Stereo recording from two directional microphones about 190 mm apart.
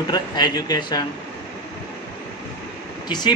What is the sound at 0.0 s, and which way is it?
A man's voice, 20° left (ahead or behind).